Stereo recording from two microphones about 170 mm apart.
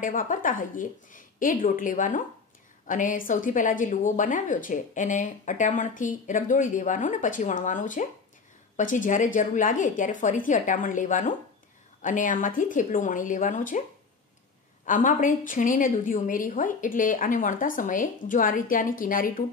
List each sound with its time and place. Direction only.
0.0 s a woman's voice: 55° left (ahead or behind)
14.9 s a woman's voice: 50° left (ahead or behind)